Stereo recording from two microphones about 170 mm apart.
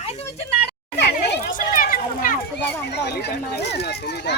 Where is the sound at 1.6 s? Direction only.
55° left (ahead or behind).